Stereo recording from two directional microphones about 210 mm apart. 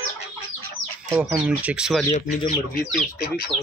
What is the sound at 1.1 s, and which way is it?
Speech, 5° right (ahead or behind).